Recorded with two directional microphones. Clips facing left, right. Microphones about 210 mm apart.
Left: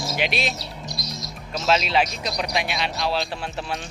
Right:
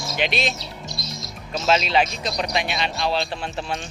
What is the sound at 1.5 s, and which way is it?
Speech, centre (ahead or behind).